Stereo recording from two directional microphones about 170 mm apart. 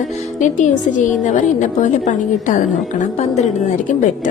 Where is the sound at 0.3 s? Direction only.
45° left (ahead or behind).